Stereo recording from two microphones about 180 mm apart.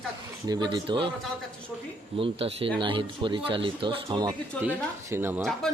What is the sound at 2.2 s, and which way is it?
Speech, 30° right (ahead or behind).